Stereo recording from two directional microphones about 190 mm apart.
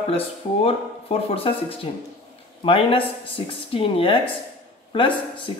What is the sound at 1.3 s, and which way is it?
Speech, 30° left (ahead or behind).